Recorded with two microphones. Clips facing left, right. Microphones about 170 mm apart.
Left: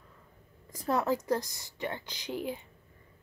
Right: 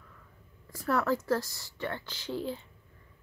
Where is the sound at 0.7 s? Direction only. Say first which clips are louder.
Even; 15° left (ahead or behind).